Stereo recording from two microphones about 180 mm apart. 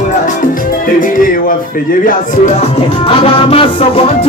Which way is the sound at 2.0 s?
45° left (ahead or behind).